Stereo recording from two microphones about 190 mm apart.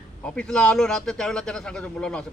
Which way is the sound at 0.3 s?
5° left (ahead or behind).